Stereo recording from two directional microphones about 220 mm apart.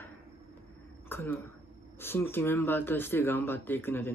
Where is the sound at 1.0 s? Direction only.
10° left (ahead or behind).